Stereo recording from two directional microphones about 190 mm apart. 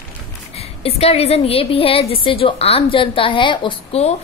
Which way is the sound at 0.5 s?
35° left (ahead or behind).